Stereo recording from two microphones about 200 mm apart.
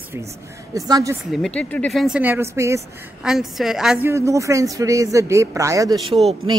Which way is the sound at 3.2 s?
Centre (ahead or behind).